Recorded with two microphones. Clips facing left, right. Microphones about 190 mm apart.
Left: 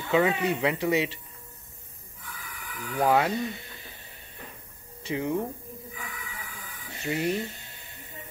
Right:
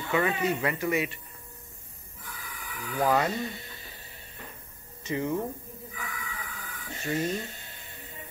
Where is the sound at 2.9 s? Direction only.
15° left (ahead or behind).